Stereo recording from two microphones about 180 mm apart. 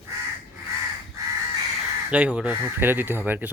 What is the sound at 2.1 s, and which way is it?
Speech, 5° right (ahead or behind).